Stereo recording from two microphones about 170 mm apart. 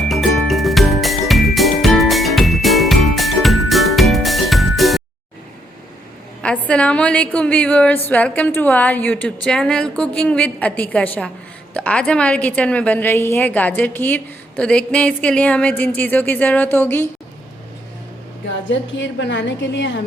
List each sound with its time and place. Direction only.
0.1 s music: centre (ahead or behind)
6.4 s a woman's voice: 5° left (ahead or behind)
18.7 s a woman's voice: 90° left